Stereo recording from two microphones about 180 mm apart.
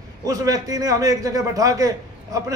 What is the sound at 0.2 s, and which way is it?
A man's voice, 20° right (ahead or behind).